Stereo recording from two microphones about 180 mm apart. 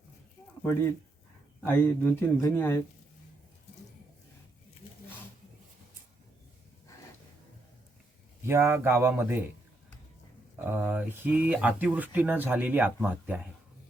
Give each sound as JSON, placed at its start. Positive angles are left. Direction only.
{"t": 0.6, "sound": "speech", "side_deg": 15}
{"t": 8.4, "sound": "speech", "side_deg": -15}
{"t": 10.6, "sound": "speech", "side_deg": -10}